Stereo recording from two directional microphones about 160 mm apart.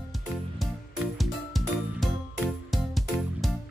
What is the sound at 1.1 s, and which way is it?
Music, centre (ahead or behind).